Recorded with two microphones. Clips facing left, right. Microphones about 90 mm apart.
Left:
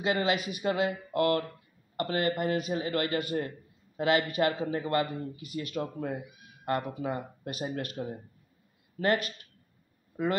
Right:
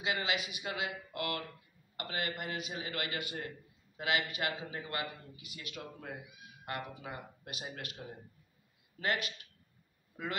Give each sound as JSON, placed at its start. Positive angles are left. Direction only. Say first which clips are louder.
{"t": 0.0, "sound": "a man's voice", "louder": "left 7 dB", "side_deg": 40}